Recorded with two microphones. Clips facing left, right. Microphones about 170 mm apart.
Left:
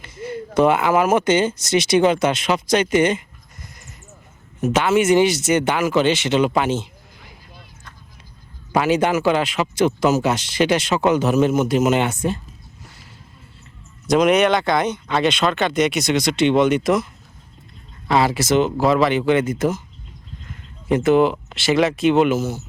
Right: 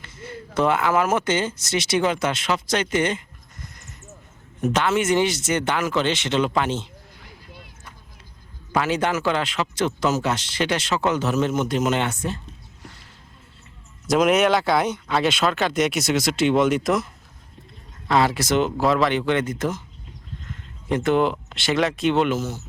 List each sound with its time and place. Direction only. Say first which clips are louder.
0.0 s speech: left 8 dB; 15° left (ahead or behind)
4.6 s speech: left 4 dB; 10° left (ahead or behind)
8.7 s speech: left 5 dB; 10° left (ahead or behind)
14.1 s speech: left 2 dB; 5° right (ahead or behind)
18.1 s speech: left 3 dB; centre (ahead or behind)
20.8 s speech: left 4 dB; 5° left (ahead or behind)